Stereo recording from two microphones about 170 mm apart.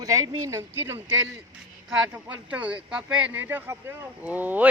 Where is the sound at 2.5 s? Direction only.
10° right (ahead or behind).